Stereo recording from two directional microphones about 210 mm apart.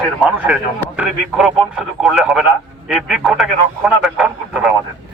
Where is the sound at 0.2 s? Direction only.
5° right (ahead or behind).